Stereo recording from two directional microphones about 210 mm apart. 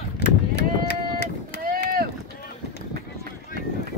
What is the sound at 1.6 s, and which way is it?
Boat, 40° right (ahead or behind).